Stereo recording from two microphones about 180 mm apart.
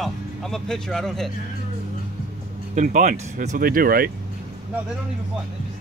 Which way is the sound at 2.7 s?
50° right (ahead or behind).